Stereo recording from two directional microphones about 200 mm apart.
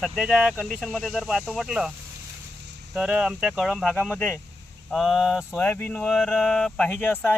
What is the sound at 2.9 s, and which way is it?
Speech, 5° right (ahead or behind).